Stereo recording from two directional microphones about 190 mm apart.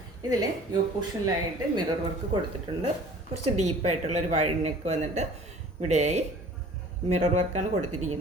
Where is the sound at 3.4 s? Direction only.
35° right (ahead or behind).